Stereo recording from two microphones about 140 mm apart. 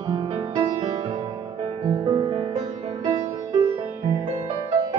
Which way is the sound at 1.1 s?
35° right (ahead or behind).